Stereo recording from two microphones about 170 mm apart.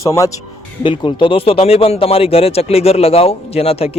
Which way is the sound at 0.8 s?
30° left (ahead or behind).